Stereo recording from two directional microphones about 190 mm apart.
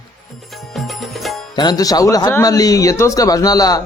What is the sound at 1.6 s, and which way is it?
A man's voice, 20° left (ahead or behind).